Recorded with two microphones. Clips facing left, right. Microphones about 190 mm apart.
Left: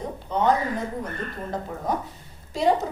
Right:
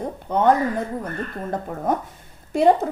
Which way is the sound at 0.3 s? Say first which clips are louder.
Right 4 dB; 55° right (ahead or behind).